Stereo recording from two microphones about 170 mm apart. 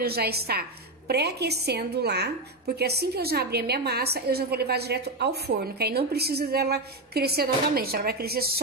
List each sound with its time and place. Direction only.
0.0 s a woman's voice: 65° right (ahead or behind)